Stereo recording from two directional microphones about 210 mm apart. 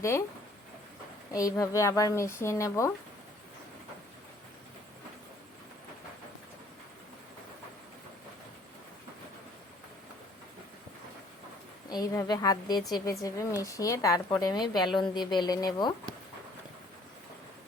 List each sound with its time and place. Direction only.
1.3 s a woman's voice: 15° left (ahead or behind)
11.9 s a woman's voice: 15° left (ahead or behind)